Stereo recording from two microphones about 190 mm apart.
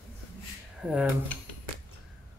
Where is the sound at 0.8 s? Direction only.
5° right (ahead or behind).